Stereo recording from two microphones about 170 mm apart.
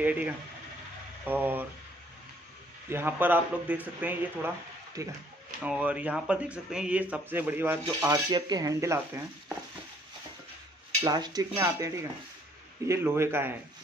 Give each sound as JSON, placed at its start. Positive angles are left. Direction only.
{"t": 0.0, "sound": "speech", "side_deg": -10}
{"t": 2.9, "sound": "speech", "side_deg": -10}
{"t": 5.6, "sound": "speech", "side_deg": -10}
{"t": 8.0, "sound": "speech", "side_deg": -25}
{"t": 11.1, "sound": "speech", "side_deg": -25}